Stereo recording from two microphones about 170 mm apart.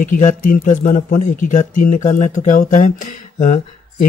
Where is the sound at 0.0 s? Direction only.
50° left (ahead or behind).